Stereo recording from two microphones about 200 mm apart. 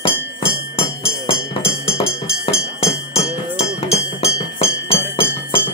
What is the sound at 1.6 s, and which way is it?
Music, 30° left (ahead or behind).